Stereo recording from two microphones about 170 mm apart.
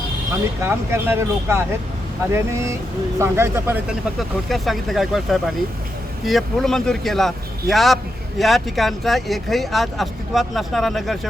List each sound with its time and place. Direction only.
0.6 s speech: 15° right (ahead or behind)
4.2 s speech: centre (ahead or behind)